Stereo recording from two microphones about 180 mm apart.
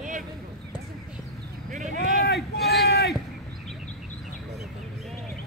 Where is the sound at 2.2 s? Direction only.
65° left (ahead or behind).